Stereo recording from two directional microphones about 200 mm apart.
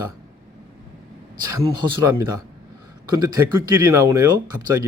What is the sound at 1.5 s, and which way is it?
Speech, 15° right (ahead or behind).